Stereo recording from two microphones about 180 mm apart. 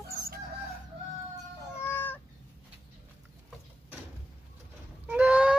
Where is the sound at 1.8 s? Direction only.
10° left (ahead or behind).